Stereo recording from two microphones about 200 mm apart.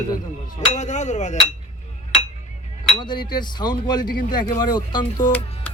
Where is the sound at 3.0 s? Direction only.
20° left (ahead or behind).